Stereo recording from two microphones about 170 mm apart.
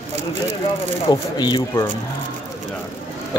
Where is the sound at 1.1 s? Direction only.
25° left (ahead or behind).